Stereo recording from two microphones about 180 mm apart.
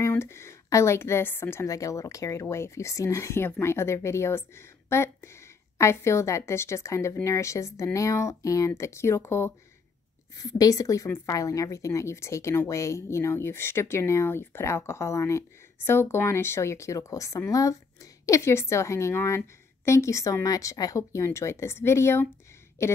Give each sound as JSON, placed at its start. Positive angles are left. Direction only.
{"t": 0.0, "sound": "a woman's voice", "side_deg": 15}